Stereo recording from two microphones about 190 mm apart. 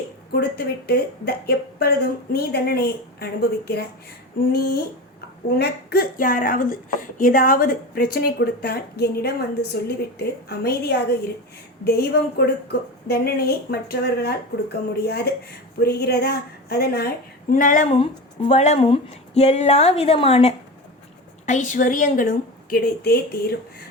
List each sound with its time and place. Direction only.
0.3 s speech: 55° left (ahead or behind)
4.5 s speech: 55° left (ahead or behind)
17.5 s speech: 45° left (ahead or behind)